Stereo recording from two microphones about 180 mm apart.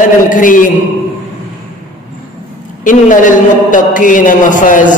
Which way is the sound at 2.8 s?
45° left (ahead or behind).